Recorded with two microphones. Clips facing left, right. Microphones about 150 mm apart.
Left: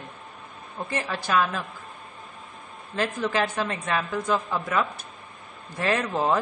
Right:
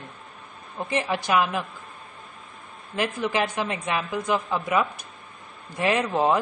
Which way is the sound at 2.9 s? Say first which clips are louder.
Even; 15° right (ahead or behind).